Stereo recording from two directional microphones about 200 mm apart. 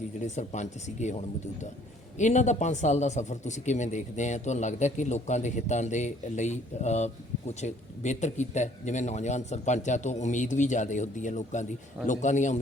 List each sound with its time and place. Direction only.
0.2 s a man's voice: 35° left (ahead or behind)